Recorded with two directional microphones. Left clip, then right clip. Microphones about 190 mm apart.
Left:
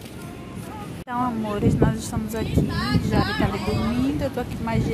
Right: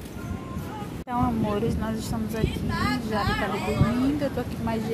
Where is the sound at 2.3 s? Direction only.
35° left (ahead or behind).